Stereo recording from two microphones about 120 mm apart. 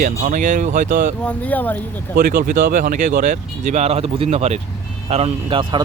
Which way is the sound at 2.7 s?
90° right.